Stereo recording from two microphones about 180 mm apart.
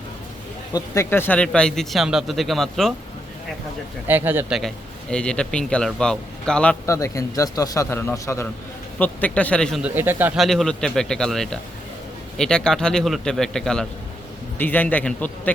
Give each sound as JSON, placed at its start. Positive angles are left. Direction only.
{"t": 0.7, "sound": "speech", "side_deg": 15}
{"t": 4.0, "sound": "a man's voice", "side_deg": -10}
{"t": 6.8, "sound": "a man's voice", "side_deg": 15}
{"t": 9.8, "sound": "a man's voice", "side_deg": -10}
{"t": 10.3, "sound": "a man's voice", "side_deg": 0}